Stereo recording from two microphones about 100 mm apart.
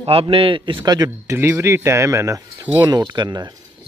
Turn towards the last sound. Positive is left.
turn(degrees=-45)  # may be behind; listen again after turning